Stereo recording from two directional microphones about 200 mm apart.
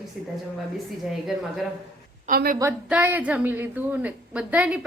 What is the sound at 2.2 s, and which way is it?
Speech, 45° right (ahead or behind).